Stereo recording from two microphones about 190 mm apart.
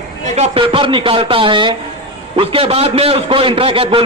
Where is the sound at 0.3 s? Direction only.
30° right (ahead or behind).